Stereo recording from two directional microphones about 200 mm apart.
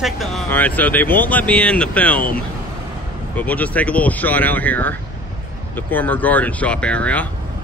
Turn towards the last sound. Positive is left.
turn(degrees=5)  # may be behind; listen again after turning